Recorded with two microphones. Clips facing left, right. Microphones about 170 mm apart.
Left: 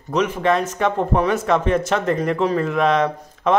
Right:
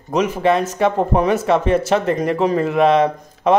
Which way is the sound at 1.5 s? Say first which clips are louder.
Right 3 dB; 30° right (ahead or behind).